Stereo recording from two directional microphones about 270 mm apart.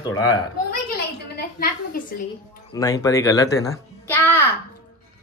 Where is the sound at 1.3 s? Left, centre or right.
Left.